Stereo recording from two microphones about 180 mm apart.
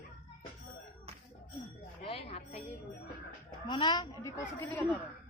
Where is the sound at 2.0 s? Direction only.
30° left (ahead or behind).